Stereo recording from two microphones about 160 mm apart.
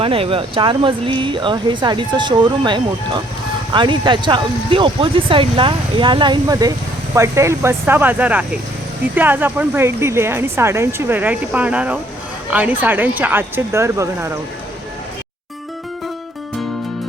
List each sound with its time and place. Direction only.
0.0 s speech: 35° right (ahead or behind); by 14.3 s 15° right (ahead or behind)